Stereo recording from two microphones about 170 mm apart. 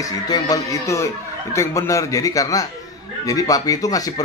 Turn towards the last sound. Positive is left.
turn(degrees=20)  # may be behind; listen again after turning